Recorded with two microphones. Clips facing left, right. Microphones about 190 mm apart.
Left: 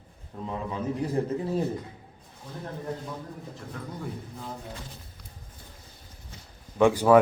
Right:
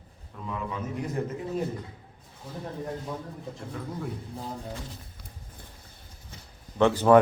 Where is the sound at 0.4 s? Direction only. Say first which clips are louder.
Left 3 dB; 30° left (ahead or behind).